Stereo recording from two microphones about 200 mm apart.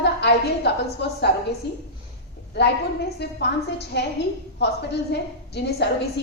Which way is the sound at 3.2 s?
55° left (ahead or behind).